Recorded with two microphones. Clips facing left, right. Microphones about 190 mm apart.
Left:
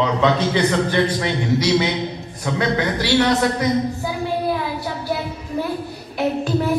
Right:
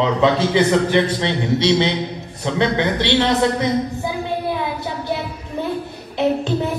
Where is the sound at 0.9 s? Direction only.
25° right (ahead or behind).